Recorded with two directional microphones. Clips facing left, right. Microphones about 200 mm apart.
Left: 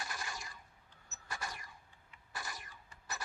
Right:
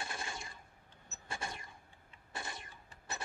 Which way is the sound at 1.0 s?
25° right (ahead or behind).